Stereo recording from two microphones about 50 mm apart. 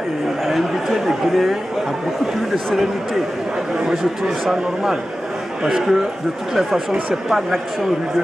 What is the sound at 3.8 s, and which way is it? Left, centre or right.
Speech, centre.